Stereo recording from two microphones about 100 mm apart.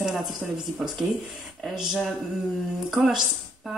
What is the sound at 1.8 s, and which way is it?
Speech, 5° right (ahead or behind).